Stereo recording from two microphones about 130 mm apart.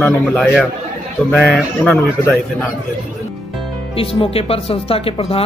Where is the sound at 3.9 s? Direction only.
45° left (ahead or behind).